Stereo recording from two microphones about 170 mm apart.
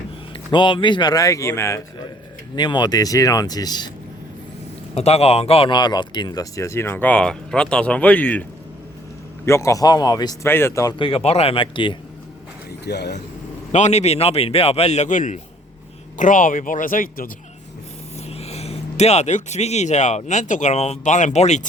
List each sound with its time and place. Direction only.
0.5 s speech: 30° left (ahead or behind)
2.6 s speech: 25° left (ahead or behind)
4.9 s speech: 40° left (ahead or behind); by 8.4 s 10° left (ahead or behind)
9.5 s speech: 15° left (ahead or behind)
12.8 s speech: 75° left (ahead or behind)
13.7 s a man's voice: 40° left (ahead or behind)
18.3 s speech: 35° left (ahead or behind)